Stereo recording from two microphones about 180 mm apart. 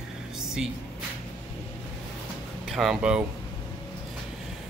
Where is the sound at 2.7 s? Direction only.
Centre (ahead or behind).